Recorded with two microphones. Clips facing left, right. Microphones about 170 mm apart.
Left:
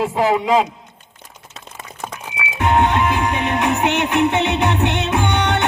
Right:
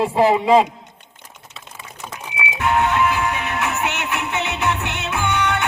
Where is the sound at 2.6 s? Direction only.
25° left (ahead or behind).